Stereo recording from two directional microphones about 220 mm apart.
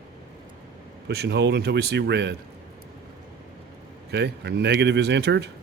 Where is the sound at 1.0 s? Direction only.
50° right (ahead or behind).